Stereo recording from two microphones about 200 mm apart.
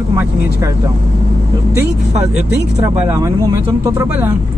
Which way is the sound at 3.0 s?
15° right (ahead or behind).